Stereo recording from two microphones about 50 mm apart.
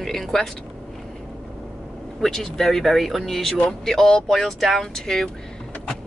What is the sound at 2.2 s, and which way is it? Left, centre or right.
Speech, centre.